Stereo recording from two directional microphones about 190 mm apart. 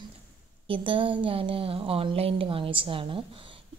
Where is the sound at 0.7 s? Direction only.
25° right (ahead or behind).